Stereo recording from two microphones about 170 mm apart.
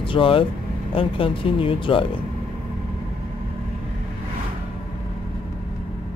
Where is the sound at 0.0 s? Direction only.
30° left (ahead or behind).